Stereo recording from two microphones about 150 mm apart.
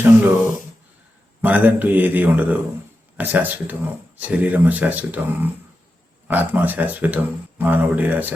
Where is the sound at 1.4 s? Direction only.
10° right (ahead or behind).